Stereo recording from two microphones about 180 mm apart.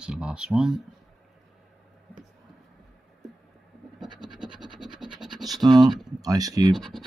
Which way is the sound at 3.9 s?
25° right (ahead or behind).